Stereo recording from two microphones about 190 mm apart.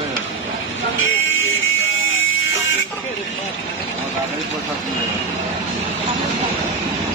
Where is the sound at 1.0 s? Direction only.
90° left.